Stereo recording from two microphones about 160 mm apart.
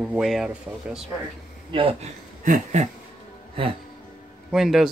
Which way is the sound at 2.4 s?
50° right (ahead or behind).